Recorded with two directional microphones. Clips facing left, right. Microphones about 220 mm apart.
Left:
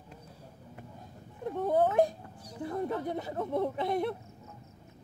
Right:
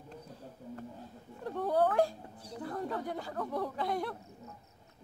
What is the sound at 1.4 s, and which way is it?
Speech, 20° left (ahead or behind).